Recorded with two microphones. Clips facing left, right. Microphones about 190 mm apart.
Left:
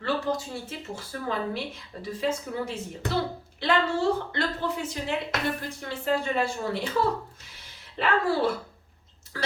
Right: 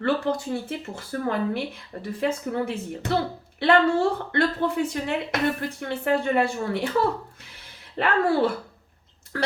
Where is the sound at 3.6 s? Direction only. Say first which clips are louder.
Right 5 dB; 60° right (ahead or behind).